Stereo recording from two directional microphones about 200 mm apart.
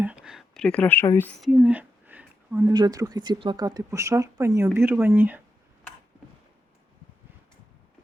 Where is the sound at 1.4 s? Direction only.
5° right (ahead or behind).